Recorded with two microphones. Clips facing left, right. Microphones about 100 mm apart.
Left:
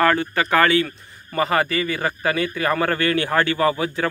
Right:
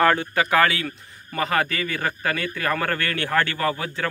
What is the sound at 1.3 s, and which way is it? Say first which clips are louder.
A man's voice: left 3 dB; 5° left (ahead or behind).